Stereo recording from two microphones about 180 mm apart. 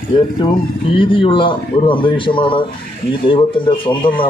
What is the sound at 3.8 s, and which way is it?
Speech, 30° left (ahead or behind).